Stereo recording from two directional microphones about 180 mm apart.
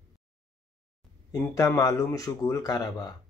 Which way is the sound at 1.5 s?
15° left (ahead or behind).